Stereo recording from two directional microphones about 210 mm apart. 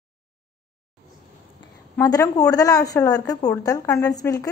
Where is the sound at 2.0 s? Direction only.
15° left (ahead or behind).